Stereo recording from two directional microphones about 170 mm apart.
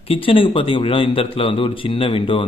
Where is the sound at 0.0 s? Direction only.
35° left (ahead or behind).